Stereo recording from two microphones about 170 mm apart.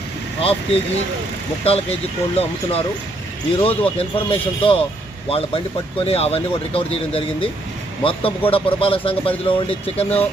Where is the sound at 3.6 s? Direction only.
35° left (ahead or behind).